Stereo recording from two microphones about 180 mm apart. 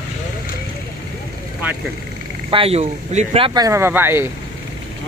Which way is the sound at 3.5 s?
20° right (ahead or behind).